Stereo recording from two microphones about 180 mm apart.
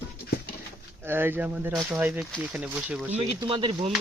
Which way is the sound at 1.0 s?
10° right (ahead or behind).